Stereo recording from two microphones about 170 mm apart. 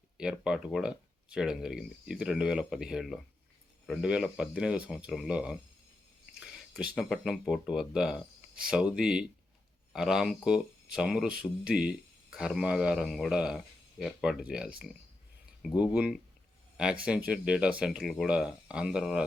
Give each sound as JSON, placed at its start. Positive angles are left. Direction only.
{"t": 0.2, "sound": "speech", "side_deg": -5}